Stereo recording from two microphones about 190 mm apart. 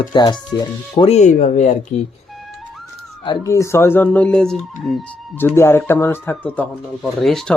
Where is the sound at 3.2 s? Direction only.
15° left (ahead or behind).